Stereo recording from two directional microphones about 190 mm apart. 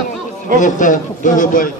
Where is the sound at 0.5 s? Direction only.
40° left (ahead or behind).